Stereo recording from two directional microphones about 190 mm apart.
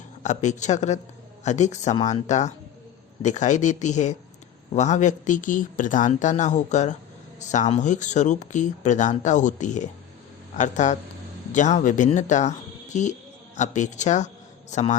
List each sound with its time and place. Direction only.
0.2 s a man's voice: 40° left (ahead or behind)